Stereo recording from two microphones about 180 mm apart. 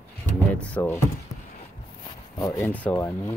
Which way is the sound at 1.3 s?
20° left (ahead or behind).